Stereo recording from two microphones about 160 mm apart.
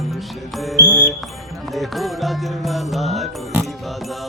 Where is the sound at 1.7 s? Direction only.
Centre (ahead or behind).